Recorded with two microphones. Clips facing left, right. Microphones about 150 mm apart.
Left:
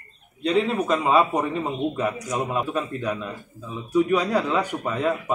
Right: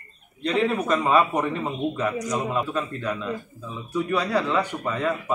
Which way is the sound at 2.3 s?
10° left (ahead or behind).